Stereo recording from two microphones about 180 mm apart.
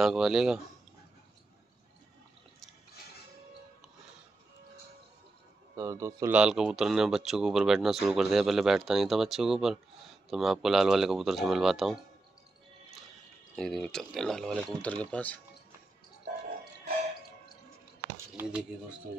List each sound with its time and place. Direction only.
0.0 s speech: 5° right (ahead or behind)
5.8 s speech: 15° right (ahead or behind)
6.3 s speech: 5° right (ahead or behind)
13.6 s speech: 5° left (ahead or behind)
18.3 s speech: 10° right (ahead or behind)